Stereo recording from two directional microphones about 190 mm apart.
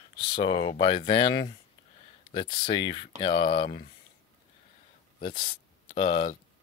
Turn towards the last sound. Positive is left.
turn(degrees=25)  # may be behind; listen again after turning